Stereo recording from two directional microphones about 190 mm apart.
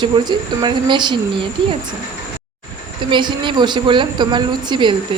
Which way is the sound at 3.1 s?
25° right (ahead or behind).